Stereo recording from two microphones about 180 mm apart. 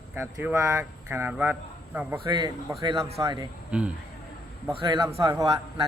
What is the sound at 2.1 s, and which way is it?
Speech, 25° right (ahead or behind).